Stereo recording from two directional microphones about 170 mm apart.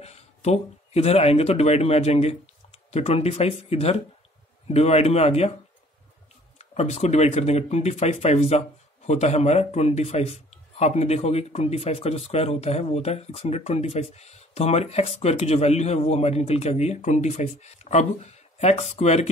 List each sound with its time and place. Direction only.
0.0 s speech: 40° left (ahead or behind)
6.6 s speech: 40° left (ahead or behind)